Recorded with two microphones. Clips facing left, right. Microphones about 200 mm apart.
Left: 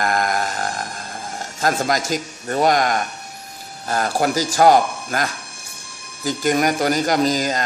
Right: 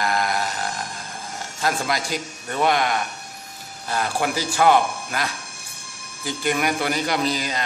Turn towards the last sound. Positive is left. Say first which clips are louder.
# left 5 dB
turn(degrees=45)  # may be behind; listen again after turning